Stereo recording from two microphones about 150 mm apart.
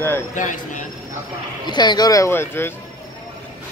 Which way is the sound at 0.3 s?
55° left (ahead or behind).